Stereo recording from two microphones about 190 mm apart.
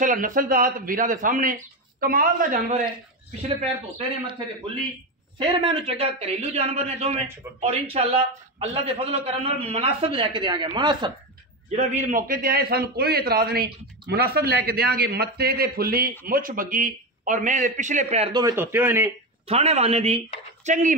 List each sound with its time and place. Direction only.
0.0 s a man's voice: 45° right (ahead or behind)
5.4 s a man's voice: 30° right (ahead or behind)
11.7 s a man's voice: 35° right (ahead or behind)
18.3 s a man's voice: 20° right (ahead or behind)
19.4 s a man's voice: 35° right (ahead or behind)